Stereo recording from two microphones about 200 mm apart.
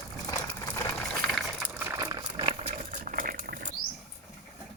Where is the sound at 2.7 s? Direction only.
40° right (ahead or behind).